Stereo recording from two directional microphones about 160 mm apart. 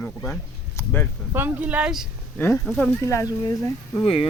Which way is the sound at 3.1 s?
20° left (ahead or behind).